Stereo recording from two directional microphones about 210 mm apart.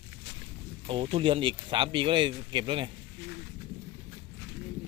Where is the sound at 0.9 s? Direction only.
25° right (ahead or behind).